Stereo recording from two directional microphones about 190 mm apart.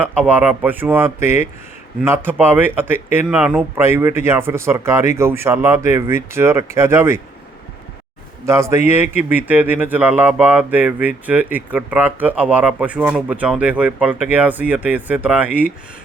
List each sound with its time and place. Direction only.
0.0 s speech: 10° right (ahead or behind)
8.4 s speech: 15° right (ahead or behind)